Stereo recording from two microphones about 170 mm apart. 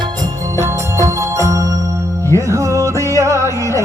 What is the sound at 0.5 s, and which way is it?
Music, 15° right (ahead or behind).